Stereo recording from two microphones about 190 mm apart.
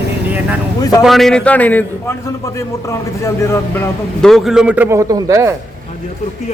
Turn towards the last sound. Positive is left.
turn(degrees=-15)  # may be behind; listen again after turning